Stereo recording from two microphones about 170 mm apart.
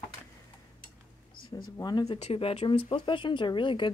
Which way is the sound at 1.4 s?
60° left (ahead or behind).